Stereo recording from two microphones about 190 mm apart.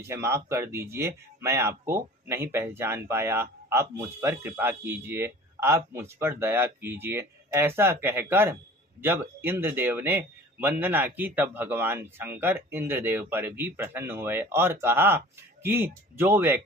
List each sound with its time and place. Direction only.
0.1 s speech: 15° right (ahead or behind)